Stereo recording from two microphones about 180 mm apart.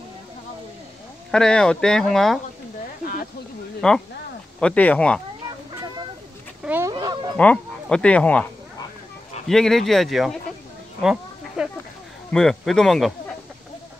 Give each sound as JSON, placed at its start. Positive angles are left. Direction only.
{"t": 1.3, "sound": "speech", "side_deg": 5}
{"t": 3.8, "sound": "speech", "side_deg": 5}
{"t": 6.6, "sound": "chicken", "side_deg": -10}
{"t": 6.9, "sound": "livestock", "side_deg": -20}
{"t": 7.3, "sound": "speech", "side_deg": 5}
{"t": 9.5, "sound": "speech", "side_deg": 0}
{"t": 11.0, "sound": "a sound", "side_deg": -5}
{"t": 12.3, "sound": "speech", "side_deg": 5}